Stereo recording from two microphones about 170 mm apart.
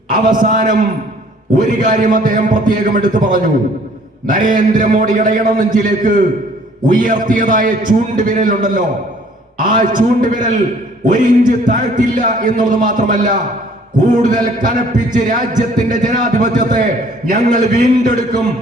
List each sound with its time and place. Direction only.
0.3 s a man's voice: 50° right (ahead or behind)